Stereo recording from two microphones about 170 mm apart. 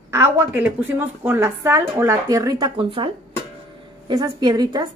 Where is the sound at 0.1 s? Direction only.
15° right (ahead or behind); by 3.1 s 30° right (ahead or behind).